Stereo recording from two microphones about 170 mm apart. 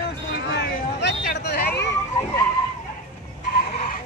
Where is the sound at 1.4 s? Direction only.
70° left (ahead or behind).